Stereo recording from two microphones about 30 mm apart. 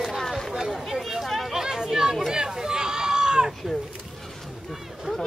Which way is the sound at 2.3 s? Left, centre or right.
Right.